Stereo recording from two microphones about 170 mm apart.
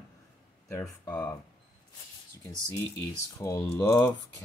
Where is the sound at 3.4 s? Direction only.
20° left (ahead or behind).